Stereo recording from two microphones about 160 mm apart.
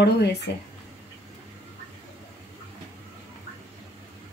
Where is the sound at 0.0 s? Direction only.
90° left.